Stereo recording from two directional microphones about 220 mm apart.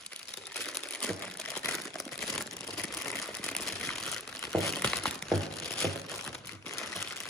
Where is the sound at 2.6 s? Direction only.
Centre (ahead or behind).